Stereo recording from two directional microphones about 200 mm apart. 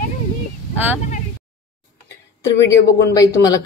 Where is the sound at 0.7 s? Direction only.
10° right (ahead or behind).